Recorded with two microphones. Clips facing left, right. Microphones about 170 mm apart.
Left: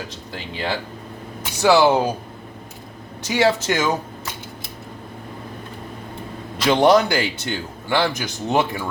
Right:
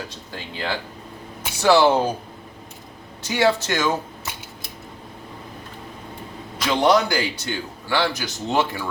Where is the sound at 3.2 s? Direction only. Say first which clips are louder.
Left 2 dB; 20° left (ahead or behind).